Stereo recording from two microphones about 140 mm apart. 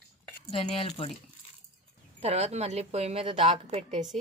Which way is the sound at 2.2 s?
50° right (ahead or behind).